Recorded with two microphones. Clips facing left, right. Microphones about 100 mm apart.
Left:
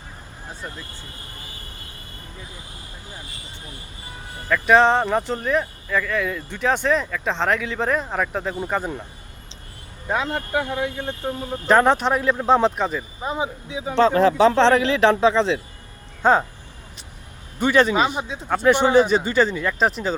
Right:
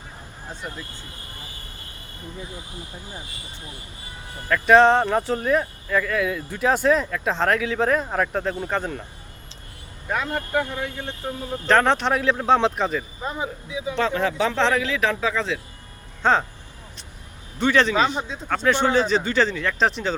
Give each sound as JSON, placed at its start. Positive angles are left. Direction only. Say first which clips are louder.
{"t": 0.6, "sound": "speech", "louder": "even", "side_deg": -5}
{"t": 4.4, "sound": "speech", "louder": "right 1 dB", "side_deg": 0}
{"t": 10.1, "sound": "speech", "louder": "left 2 dB", "side_deg": 20}
{"t": 13.2, "sound": "speech", "louder": "left 7 dB", "side_deg": 15}
{"t": 13.8, "sound": "speech", "louder": "left 7 dB", "side_deg": 35}
{"t": 16.2, "sound": "speech", "louder": "left 3 dB", "side_deg": 10}
{"t": 17.6, "sound": "speech", "louder": "left 1 dB", "side_deg": 10}